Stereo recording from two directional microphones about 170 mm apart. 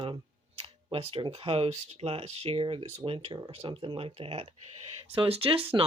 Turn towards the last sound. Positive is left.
turn(degrees=-30)  # may be behind; listen again after turning